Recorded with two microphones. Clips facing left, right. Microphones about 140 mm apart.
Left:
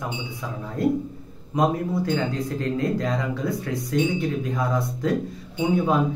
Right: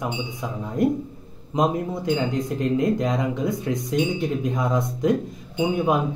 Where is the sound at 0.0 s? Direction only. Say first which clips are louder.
Right 3 dB; 20° right (ahead or behind).